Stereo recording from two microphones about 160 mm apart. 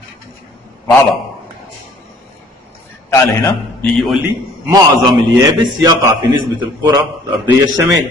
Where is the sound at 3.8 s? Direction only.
Centre (ahead or behind).